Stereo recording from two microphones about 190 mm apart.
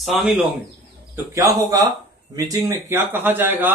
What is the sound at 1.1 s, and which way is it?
Speech, 15° right (ahead or behind).